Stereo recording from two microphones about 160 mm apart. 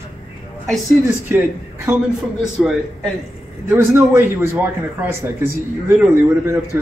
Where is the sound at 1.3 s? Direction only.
15° right (ahead or behind).